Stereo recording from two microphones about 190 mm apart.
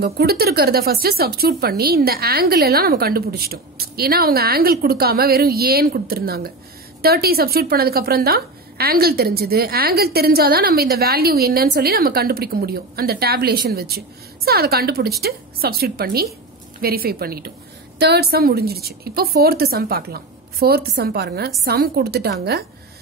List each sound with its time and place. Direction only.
0.0 s a woman's voice: 55° right (ahead or behind)